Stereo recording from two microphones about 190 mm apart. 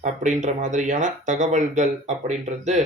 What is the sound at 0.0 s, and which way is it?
Speech, 40° right (ahead or behind).